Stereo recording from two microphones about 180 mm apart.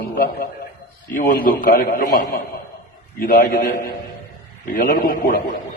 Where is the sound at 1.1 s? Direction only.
50° left (ahead or behind).